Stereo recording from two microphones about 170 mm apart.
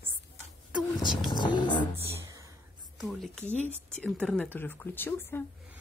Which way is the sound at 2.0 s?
15° right (ahead or behind).